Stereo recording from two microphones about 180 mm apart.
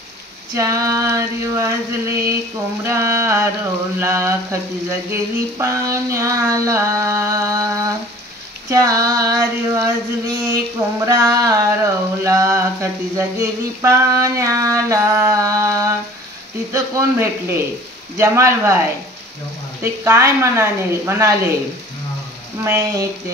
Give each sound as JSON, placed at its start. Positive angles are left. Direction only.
{"t": 0.6, "sound": "female singing", "side_deg": -20}
{"t": 16.7, "sound": "female singing", "side_deg": -15}
{"t": 22.6, "sound": "female singing", "side_deg": -15}